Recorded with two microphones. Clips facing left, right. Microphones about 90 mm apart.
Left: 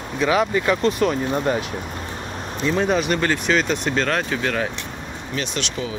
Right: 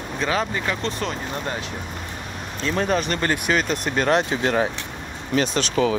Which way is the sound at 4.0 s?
20° right (ahead or behind).